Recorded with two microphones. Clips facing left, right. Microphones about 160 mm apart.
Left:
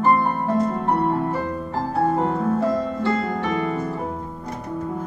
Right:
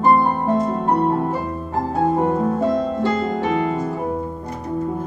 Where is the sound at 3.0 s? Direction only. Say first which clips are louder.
Right 3 dB; 20° right (ahead or behind).